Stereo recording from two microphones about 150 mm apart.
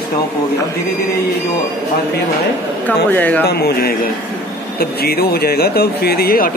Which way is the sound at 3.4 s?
90° left.